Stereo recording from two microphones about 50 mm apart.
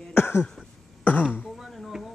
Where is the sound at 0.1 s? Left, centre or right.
Left.